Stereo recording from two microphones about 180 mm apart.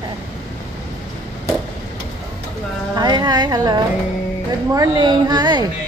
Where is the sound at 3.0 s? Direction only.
25° right (ahead or behind).